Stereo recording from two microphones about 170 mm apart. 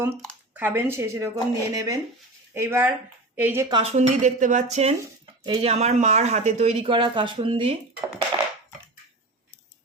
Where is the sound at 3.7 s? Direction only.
35° right (ahead or behind).